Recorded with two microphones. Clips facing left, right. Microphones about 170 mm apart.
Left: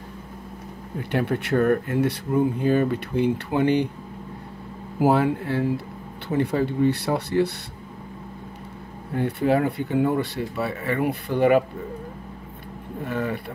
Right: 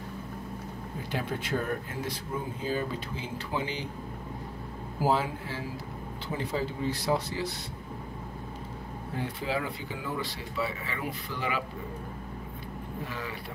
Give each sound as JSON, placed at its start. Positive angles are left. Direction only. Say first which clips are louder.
{"t": 1.1, "sound": "speech", "louder": "left 9 dB", "side_deg": 65}
{"t": 5.0, "sound": "speech", "louder": "left 8 dB", "side_deg": 65}
{"t": 9.1, "sound": "speech", "louder": "left 11 dB", "side_deg": 60}
{"t": 13.0, "sound": "speech", "louder": "left 13 dB", "side_deg": 55}